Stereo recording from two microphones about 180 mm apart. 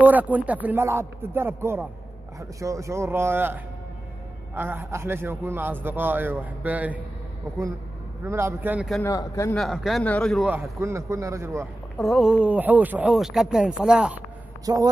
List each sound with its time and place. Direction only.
0.0 s a man's voice: 10° right (ahead or behind)
4.6 s a man's voice: 15° right (ahead or behind)
8.2 s a man's voice: 15° right (ahead or behind)
9.0 s speech: 15° left (ahead or behind)
9.6 s speech: centre (ahead or behind)
10.5 s a man's voice: 15° right (ahead or behind)
12.0 s speech: centre (ahead or behind)
14.7 s speech: 20° right (ahead or behind)